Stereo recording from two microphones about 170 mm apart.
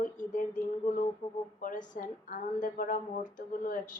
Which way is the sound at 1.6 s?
50° left (ahead or behind).